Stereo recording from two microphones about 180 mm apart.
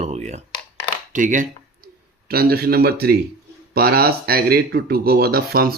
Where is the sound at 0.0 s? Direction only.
40° right (ahead or behind).